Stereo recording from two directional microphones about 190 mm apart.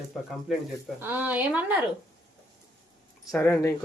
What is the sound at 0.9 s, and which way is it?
Speech, 10° right (ahead or behind).